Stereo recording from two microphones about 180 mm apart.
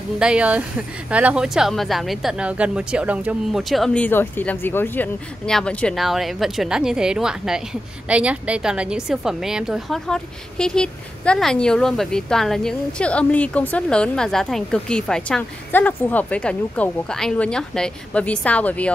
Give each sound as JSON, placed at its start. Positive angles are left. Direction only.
{"t": 0.2, "sound": "a woman's voice", "side_deg": -5}